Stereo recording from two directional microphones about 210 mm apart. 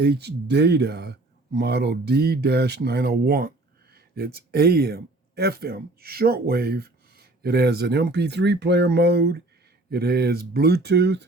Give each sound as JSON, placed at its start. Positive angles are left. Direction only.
{"t": 0.0, "sound": "speech", "side_deg": -50}